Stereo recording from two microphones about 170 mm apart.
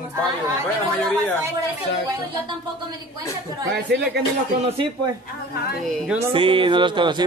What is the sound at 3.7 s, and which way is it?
Speech, 80° right.